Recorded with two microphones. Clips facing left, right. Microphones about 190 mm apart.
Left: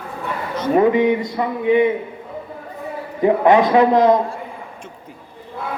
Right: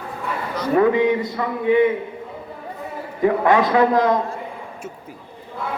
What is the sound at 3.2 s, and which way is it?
Speech, 20° left (ahead or behind).